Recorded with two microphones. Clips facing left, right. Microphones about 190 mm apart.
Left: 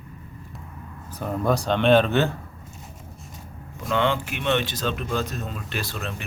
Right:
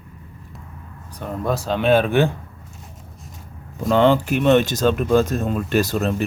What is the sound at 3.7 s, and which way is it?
Speech, 35° right (ahead or behind).